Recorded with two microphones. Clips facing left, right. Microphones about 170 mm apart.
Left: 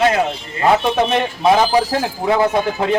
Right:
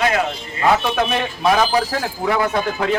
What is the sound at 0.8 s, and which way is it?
Speech, 25° left (ahead or behind).